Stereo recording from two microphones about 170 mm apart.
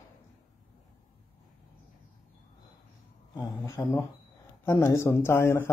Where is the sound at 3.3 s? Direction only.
20° left (ahead or behind).